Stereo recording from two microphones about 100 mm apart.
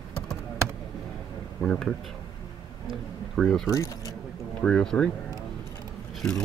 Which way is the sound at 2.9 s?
Centre (ahead or behind).